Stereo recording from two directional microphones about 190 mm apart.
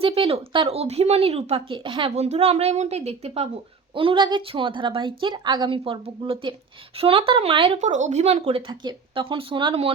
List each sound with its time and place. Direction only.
0.0 s speech: 30° right (ahead or behind)